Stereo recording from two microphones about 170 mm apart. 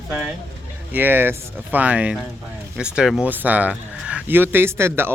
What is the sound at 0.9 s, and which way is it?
Speech, 10° right (ahead or behind).